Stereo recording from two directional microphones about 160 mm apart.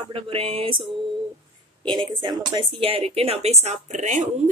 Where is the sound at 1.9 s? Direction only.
30° right (ahead or behind); by 4.2 s 50° right (ahead or behind).